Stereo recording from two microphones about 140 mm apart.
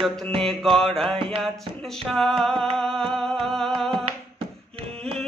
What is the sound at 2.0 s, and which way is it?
Music, centre (ahead or behind).